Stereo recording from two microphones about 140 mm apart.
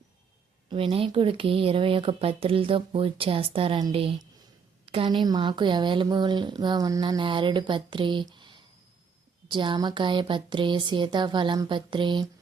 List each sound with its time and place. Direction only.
0.7 s speech: 40° right (ahead or behind)